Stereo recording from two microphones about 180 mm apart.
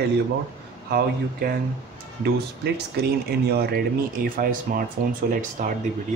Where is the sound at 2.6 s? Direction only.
60° right (ahead or behind); by 5.7 s 45° right (ahead or behind).